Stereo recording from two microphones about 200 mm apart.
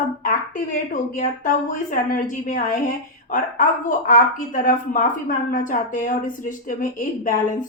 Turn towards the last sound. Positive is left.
turn(degrees=40)  # may be behind; listen again after turning